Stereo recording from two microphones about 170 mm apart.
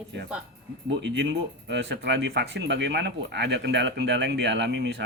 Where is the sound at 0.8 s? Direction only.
90° right.